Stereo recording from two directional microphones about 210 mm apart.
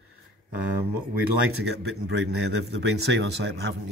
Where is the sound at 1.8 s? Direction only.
50° right (ahead or behind).